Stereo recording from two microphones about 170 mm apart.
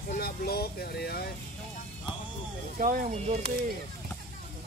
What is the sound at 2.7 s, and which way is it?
Speech, 55° right (ahead or behind).